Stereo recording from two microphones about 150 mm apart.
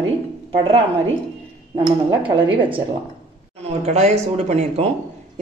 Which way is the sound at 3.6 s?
45° right (ahead or behind).